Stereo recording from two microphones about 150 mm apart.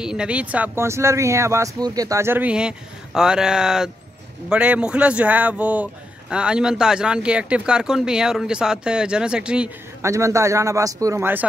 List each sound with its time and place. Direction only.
0.0 s speech: 5° right (ahead or behind)
10.0 s speech: 20° right (ahead or behind)